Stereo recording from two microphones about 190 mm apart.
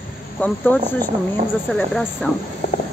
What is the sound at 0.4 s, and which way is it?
Speech, 10° left (ahead or behind).